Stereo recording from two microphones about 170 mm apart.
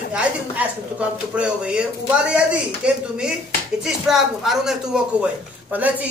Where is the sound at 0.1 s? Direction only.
5° right (ahead or behind).